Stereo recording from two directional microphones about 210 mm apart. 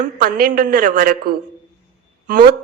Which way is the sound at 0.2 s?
45° right (ahead or behind).